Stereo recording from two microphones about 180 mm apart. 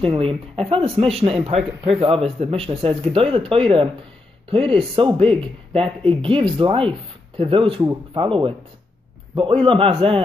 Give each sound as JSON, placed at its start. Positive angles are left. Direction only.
{"t": 0.0, "sound": "speech", "side_deg": -30}